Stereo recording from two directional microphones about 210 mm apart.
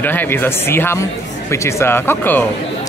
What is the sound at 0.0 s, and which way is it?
Speech, 10° left (ahead or behind).